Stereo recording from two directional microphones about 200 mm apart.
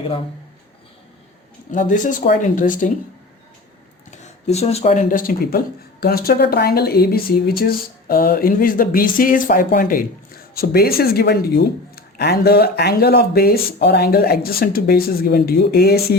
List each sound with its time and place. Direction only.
1.7 s speech: 40° left (ahead or behind)
4.2 s speech: 35° left (ahead or behind); by 16.1 s 50° left (ahead or behind)